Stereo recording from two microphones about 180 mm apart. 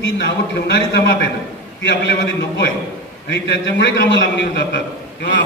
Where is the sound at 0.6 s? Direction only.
65° left (ahead or behind).